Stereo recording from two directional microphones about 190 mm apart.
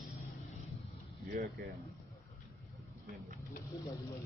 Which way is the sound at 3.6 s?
15° left (ahead or behind).